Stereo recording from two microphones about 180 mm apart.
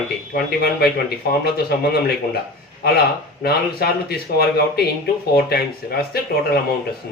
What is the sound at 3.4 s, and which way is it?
Speech, 60° left (ahead or behind).